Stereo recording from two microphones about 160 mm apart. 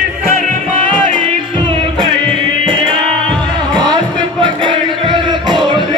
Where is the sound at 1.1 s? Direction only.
30° right (ahead or behind).